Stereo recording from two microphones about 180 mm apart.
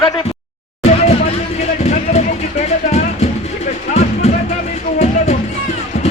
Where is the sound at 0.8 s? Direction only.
35° left (ahead or behind).